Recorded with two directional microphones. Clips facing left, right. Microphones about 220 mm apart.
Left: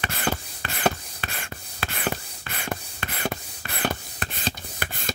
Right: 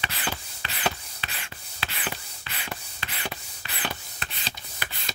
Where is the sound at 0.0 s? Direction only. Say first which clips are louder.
Left 6 dB; 50° left (ahead or behind).